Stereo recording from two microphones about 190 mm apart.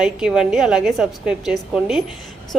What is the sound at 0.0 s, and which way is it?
A woman's voice, 5° right (ahead or behind).